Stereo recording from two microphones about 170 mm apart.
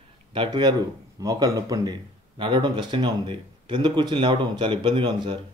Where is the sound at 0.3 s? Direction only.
25° right (ahead or behind).